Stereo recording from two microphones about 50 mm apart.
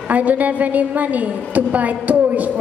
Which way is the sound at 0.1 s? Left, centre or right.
Right.